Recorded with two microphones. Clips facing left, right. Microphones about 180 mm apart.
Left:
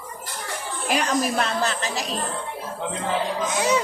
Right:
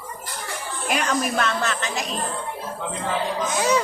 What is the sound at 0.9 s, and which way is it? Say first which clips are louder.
Speech: left 1 dB; 35° left (ahead or behind).